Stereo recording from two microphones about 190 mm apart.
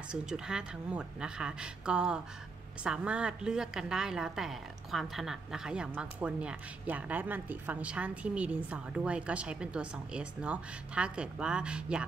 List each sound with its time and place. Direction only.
0.1 s a woman's voice: 5° right (ahead or behind)